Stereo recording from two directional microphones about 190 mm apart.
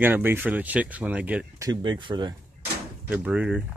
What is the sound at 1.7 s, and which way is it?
Speech, 25° right (ahead or behind).